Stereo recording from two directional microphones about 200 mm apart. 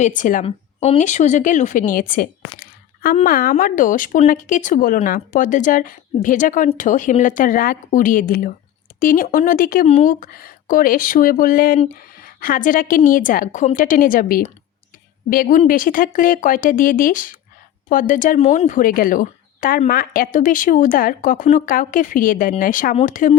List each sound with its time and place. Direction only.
0.0 s a woman's voice: 40° left (ahead or behind)